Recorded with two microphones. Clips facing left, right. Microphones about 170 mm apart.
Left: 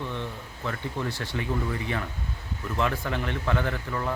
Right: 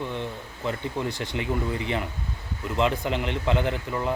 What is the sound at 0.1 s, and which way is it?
Speech, 15° right (ahead or behind).